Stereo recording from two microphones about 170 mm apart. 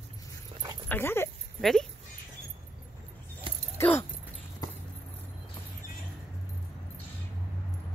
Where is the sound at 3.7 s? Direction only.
10° left (ahead or behind).